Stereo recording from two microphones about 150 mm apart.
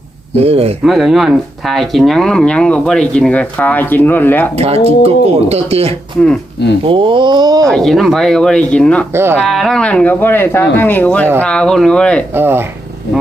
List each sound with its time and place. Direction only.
0.3 s speech: 40° right (ahead or behind)
0.9 s speech: centre (ahead or behind)
4.5 s speech: 40° right (ahead or behind)
7.7 s speech: centre (ahead or behind)
9.1 s speech: 15° right (ahead or behind)
9.5 s speech: centre (ahead or behind)
12.3 s speech: 15° right (ahead or behind)